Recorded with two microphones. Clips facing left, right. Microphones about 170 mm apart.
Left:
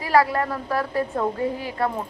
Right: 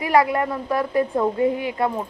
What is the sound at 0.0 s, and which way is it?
A woman's voice, 20° right (ahead or behind).